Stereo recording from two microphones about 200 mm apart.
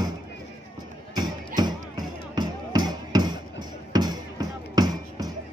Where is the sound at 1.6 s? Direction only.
20° right (ahead or behind).